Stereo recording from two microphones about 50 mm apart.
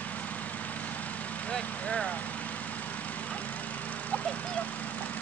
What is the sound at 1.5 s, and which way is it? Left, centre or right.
Speech, centre.